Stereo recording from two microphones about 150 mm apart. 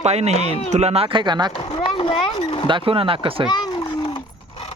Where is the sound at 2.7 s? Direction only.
35° right (ahead or behind).